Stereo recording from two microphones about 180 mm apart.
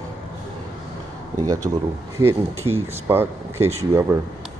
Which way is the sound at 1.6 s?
20° right (ahead or behind).